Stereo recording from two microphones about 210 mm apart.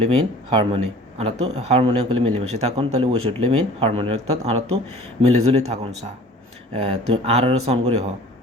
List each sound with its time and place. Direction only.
0.0 s speech: 25° right (ahead or behind)